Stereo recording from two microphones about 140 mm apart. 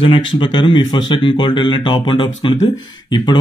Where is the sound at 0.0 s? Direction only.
35° left (ahead or behind).